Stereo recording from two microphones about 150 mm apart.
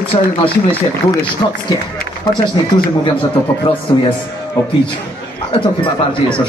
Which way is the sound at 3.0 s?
35° left (ahead or behind).